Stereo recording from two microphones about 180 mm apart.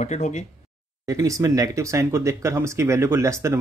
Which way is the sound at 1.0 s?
15° right (ahead or behind).